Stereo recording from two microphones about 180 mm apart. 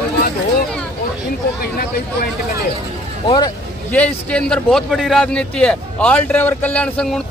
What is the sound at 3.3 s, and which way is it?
Speech, 25° left (ahead or behind).